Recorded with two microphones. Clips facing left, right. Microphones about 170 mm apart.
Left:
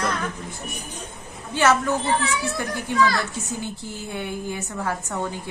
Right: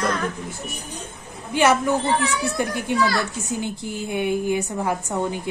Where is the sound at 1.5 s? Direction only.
15° right (ahead or behind).